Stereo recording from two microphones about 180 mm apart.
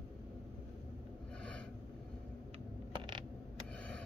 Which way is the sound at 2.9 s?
25° right (ahead or behind).